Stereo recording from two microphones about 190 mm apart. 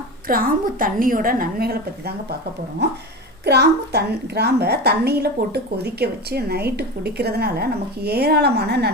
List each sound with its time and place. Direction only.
0.3 s a woman's voice: 50° right (ahead or behind)
3.4 s a woman's voice: 60° right (ahead or behind)